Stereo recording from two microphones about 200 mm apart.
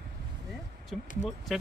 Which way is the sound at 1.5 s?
Centre (ahead or behind).